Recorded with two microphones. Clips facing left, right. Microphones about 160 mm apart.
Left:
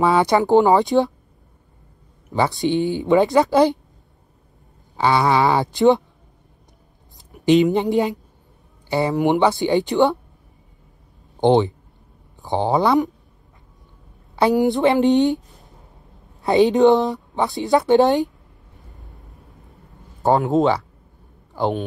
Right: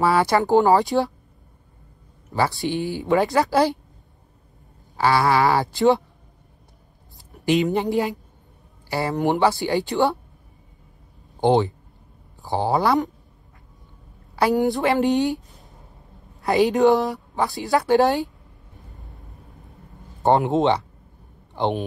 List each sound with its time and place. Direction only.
0.0 s a woman's voice: 20° left (ahead or behind)
2.3 s a woman's voice: 20° left (ahead or behind)
4.9 s a woman's voice: 20° left (ahead or behind)
7.3 s a sound: 20° left (ahead or behind)
7.7 s a woman's voice: 20° left (ahead or behind)
8.8 s a sound: 20° left (ahead or behind)
9.2 s a woman's voice: 20° left (ahead or behind)
11.4 s a woman's voice: 20° left (ahead or behind)
14.3 s a woman's voice: 20° left (ahead or behind)
16.4 s a woman's voice: 20° left (ahead or behind)
20.5 s speech: centre (ahead or behind)